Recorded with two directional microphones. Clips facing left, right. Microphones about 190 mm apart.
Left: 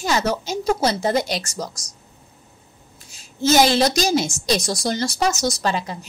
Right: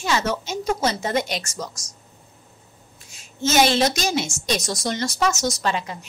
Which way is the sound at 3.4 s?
35° left (ahead or behind).